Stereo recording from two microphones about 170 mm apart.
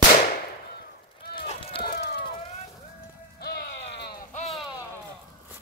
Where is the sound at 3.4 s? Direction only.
70° left (ahead or behind).